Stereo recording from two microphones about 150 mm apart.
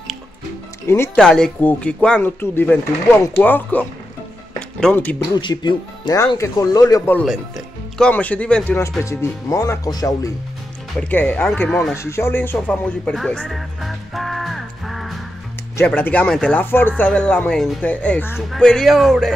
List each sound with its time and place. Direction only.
0.8 s speech: 15° left (ahead or behind)
1.1 s speech: 5° left (ahead or behind)
5.3 s speech: 30° left (ahead or behind)
7.2 s music: centre (ahead or behind)
8.1 s speech: 10° left (ahead or behind)
11.0 s speech: 10° left (ahead or behind)